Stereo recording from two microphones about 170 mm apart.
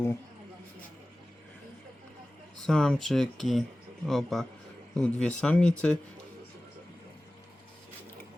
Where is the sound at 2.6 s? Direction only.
5° left (ahead or behind).